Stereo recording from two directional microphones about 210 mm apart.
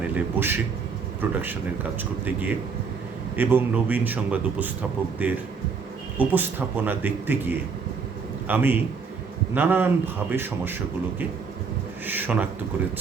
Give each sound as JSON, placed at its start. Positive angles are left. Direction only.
{"t": 0.2, "sound": "a man's voice", "side_deg": -10}